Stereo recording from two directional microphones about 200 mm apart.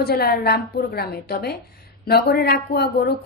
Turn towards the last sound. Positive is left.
turn(degrees=50)  # may be behind; listen again after turning